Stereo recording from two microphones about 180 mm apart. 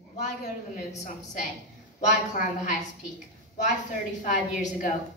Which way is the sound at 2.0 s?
45° left (ahead or behind).